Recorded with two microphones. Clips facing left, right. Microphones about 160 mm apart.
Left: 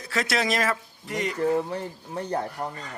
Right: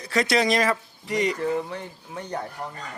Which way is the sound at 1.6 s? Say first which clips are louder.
Left 3 dB; 35° left (ahead or behind).